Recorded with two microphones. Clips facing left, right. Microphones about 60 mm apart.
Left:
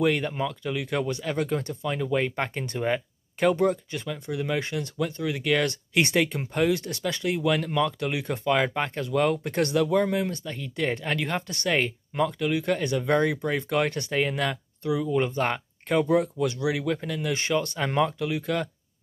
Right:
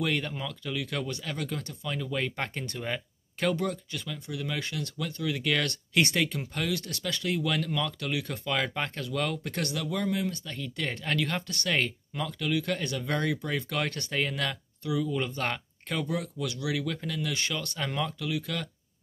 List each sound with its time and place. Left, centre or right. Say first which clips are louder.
0.0 s speech: left 6 dB; centre; by 10.4 s left
10.4 s speech: left 5 dB; centre
14.8 s speech: left 5 dB; left